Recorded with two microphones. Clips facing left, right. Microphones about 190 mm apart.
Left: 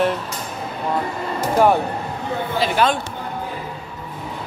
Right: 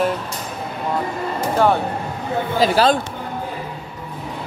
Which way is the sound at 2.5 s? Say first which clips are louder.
Right 3 dB; 35° right (ahead or behind).